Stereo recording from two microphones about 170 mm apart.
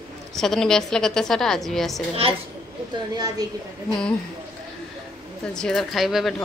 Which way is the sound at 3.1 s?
25° right (ahead or behind).